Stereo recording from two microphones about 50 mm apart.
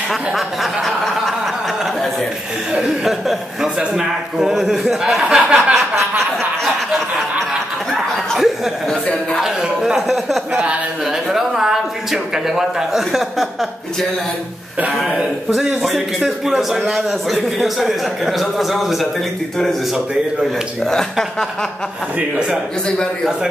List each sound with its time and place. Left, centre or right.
0.1 s speech: centre
2.8 s a man's voice: centre
8.4 s a man's voice: centre
10.5 s speech: right
11.1 s speech: centre
15.5 s a man's voice: centre
20.8 s speech: centre